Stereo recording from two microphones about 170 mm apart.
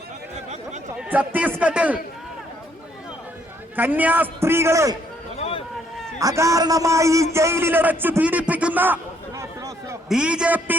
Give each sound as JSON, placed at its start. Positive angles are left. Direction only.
{"t": 0.9, "sound": "chatter", "side_deg": -10}
{"t": 3.8, "sound": "a man's voice", "side_deg": -10}
{"t": 5.4, "sound": "a sound", "side_deg": 35}
{"t": 6.1, "sound": "a man's voice", "side_deg": -20}
{"t": 9.4, "sound": "a sound", "side_deg": -15}
{"t": 10.1, "sound": "a man's voice", "side_deg": -5}